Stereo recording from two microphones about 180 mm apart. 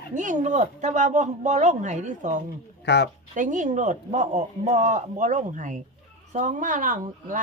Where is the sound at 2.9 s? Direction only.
70° left (ahead or behind).